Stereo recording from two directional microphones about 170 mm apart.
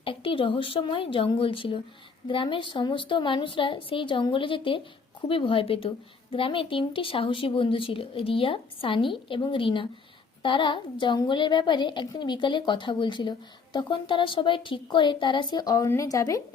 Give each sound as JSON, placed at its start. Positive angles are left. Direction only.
{"t": 0.0, "sound": "a woman's voice", "side_deg": 30}